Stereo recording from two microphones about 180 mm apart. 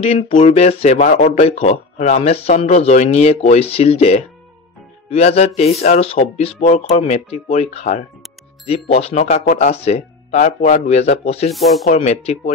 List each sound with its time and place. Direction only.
0.0 s speech: 40° left (ahead or behind)
11.5 s speech: centre (ahead or behind)
11.9 s speech: 40° left (ahead or behind)